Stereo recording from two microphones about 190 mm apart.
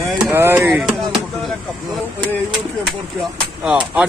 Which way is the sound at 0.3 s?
10° right (ahead or behind).